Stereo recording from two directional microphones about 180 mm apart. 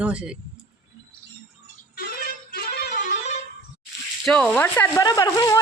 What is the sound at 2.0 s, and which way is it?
Music, 60° left (ahead or behind).